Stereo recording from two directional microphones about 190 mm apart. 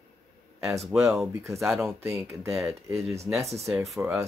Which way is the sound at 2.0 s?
15° right (ahead or behind).